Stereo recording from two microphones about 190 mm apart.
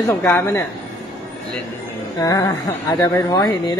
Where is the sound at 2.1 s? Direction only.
20° left (ahead or behind).